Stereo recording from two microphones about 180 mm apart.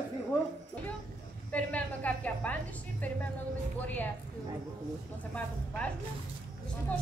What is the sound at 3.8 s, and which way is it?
Speech, 10° left (ahead or behind).